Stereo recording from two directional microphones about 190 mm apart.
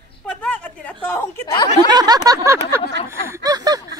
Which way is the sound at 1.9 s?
20° right (ahead or behind).